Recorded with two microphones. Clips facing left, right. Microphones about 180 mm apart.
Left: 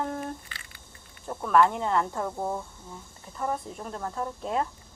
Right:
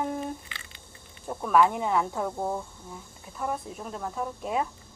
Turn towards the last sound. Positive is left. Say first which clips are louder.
# even
turn(degrees=-5)  # may be behind; listen again after turning